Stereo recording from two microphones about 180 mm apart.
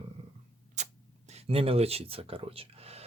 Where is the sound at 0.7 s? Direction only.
40° right (ahead or behind).